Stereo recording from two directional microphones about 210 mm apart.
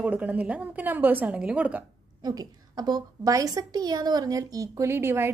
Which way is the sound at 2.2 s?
20° right (ahead or behind).